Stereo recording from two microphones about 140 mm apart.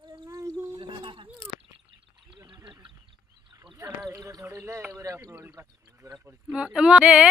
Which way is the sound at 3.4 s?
35° right (ahead or behind).